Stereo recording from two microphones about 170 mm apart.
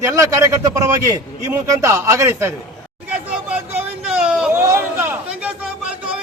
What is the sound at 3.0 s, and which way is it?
Chatter, 5° right (ahead or behind).